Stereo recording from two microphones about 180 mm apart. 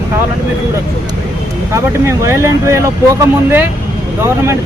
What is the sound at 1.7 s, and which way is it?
Speech, 15° right (ahead or behind).